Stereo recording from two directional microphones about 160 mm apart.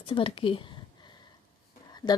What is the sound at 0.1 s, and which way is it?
Speech, 35° left (ahead or behind).